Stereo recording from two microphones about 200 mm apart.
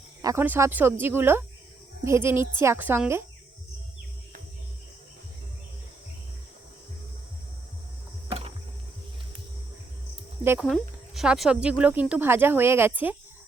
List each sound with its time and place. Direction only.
0.2 s speech: 15° right (ahead or behind)
8.3 s music: 30° right (ahead or behind)
10.4 s speech: 10° right (ahead or behind)
10.7 s speech: centre (ahead or behind)